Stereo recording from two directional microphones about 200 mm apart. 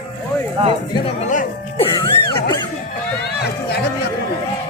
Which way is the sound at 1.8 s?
25° left (ahead or behind).